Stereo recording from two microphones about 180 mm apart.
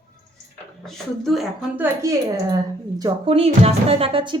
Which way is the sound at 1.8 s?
15° right (ahead or behind).